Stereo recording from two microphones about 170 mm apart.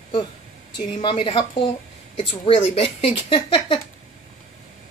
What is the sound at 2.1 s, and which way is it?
Speech, 40° left (ahead or behind).